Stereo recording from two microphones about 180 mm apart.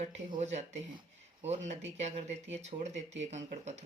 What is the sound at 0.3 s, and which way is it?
Speech, 40° right (ahead or behind).